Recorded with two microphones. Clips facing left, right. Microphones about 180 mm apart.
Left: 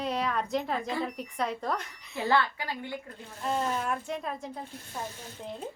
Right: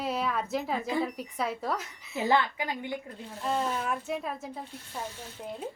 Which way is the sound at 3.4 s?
Centre (ahead or behind).